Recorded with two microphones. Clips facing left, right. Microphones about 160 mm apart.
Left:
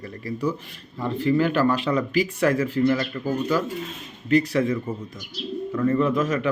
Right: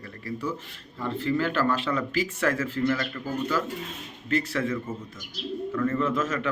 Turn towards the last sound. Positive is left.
turn(degrees=15)  # may be behind; listen again after turning